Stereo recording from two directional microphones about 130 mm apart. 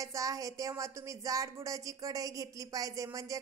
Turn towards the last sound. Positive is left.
turn(degrees=-25)  # may be behind; listen again after turning